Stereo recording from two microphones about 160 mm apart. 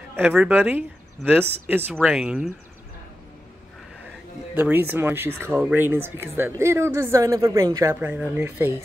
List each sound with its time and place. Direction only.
0.3 s speech: 10° right (ahead or behind)
4.6 s a woman's voice: 10° right (ahead or behind)